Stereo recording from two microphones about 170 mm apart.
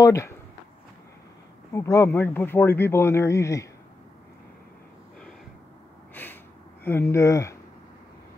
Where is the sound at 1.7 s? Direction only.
15° left (ahead or behind).